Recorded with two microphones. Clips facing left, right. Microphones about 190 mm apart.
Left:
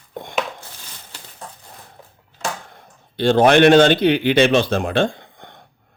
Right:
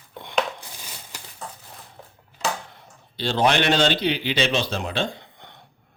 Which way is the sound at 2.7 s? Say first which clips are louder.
Left 9 dB; 50° left (ahead or behind).